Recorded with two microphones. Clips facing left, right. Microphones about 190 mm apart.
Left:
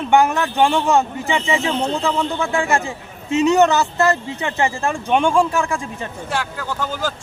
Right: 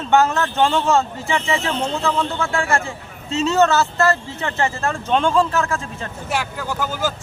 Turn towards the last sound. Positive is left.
turn(degrees=-5)  # may be behind; listen again after turning